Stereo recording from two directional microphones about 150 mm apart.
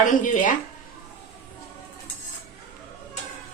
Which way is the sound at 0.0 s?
60° left (ahead or behind).